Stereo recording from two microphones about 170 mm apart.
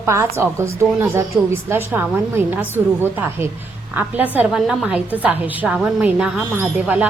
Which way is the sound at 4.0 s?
10° right (ahead or behind).